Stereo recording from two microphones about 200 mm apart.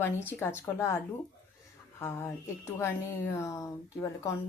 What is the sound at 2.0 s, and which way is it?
Speech, 10° left (ahead or behind).